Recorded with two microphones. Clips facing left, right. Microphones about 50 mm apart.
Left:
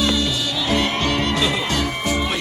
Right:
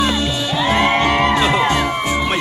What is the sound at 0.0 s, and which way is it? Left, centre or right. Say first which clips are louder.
Music: right 2 dB; right.